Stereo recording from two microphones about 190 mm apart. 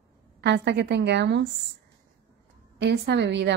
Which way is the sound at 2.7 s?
65° right (ahead or behind).